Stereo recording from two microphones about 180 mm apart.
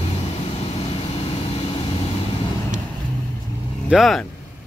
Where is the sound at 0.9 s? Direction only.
35° left (ahead or behind).